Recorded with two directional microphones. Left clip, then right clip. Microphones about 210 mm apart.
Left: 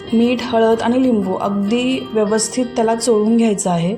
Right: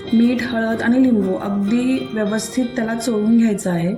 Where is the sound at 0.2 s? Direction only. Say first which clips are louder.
Left 5 dB; 30° left (ahead or behind).